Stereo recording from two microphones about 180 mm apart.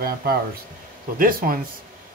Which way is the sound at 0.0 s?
60° right (ahead or behind).